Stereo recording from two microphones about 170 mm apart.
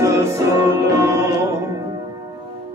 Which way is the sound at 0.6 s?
15° right (ahead or behind).